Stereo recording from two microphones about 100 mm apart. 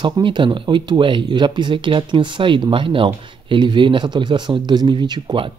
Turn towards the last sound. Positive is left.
turn(degrees=-50)  # may be behind; listen again after turning